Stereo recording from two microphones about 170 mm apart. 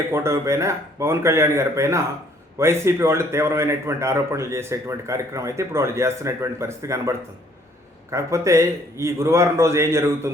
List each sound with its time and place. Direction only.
0.1 s a man's voice: 15° right (ahead or behind)